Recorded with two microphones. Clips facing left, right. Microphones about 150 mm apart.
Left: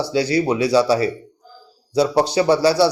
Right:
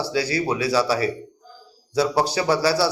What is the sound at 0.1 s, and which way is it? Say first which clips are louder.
Speech: left 6 dB; 25° left (ahead or behind).